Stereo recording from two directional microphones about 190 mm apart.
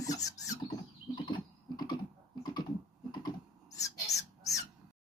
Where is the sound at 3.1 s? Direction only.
20° left (ahead or behind).